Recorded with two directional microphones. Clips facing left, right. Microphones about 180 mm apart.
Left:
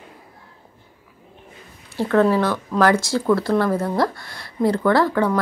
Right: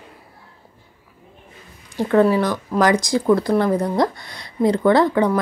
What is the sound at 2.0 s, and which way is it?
Speech, 15° right (ahead or behind).